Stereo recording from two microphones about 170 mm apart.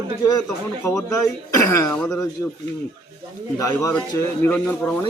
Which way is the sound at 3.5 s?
20° left (ahead or behind).